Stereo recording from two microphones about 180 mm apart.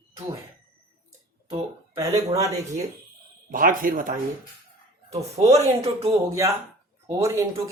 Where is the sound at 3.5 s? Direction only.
50° right (ahead or behind).